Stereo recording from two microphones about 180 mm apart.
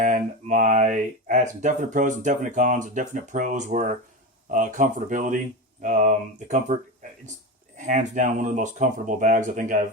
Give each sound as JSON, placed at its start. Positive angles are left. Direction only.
{"t": 0.0, "sound": "speech", "side_deg": -45}